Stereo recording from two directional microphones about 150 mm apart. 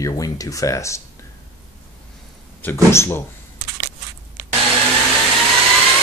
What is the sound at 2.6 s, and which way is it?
Speech, 15° left (ahead or behind).